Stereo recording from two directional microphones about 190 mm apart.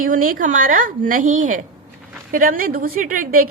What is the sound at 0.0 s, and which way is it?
A woman's voice, 45° right (ahead or behind).